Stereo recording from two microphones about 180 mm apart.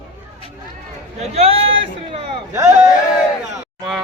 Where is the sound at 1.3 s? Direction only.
35° right (ahead or behind).